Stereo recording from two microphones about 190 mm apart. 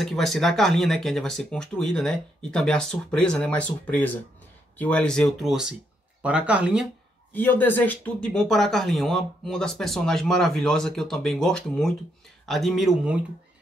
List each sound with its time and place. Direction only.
0.0 s speech: centre (ahead or behind)
7.3 s speech: 10° left (ahead or behind)